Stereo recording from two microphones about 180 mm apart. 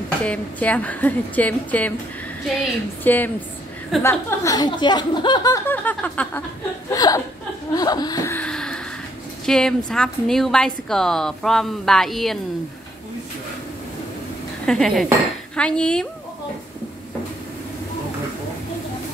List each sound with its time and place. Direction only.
0.2 s a woman's voice: 5° left (ahead or behind)
3.0 s a woman's voice: 10° left (ahead or behind)
6.9 s speech: 20° left (ahead or behind)
7.7 s a sound: 20° left (ahead or behind); by 8.8 s 5° left (ahead or behind)
9.5 s a woman's voice: 5° left (ahead or behind)
14.7 s a woman's voice: centre (ahead or behind)